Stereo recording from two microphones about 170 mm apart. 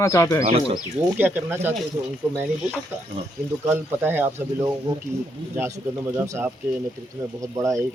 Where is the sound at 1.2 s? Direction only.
10° right (ahead or behind).